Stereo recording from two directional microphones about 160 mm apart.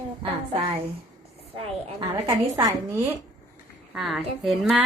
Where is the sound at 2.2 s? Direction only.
20° right (ahead or behind).